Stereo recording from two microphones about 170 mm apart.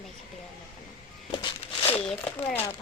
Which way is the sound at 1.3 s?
30° left (ahead or behind).